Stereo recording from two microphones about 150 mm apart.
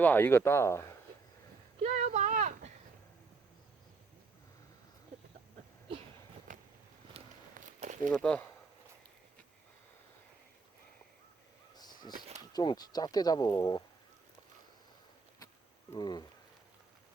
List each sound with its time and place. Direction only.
0.0 s speech: 15° left (ahead or behind)
1.8 s a sound: 50° right (ahead or behind)
7.1 s run: 40° right (ahead or behind)
7.6 s walk: 55° right (ahead or behind)
8.1 s speech: 10° left (ahead or behind)
11.8 s a sound: 25° left (ahead or behind)
12.5 s speech: 25° left (ahead or behind)
16.0 s speech: 30° left (ahead or behind)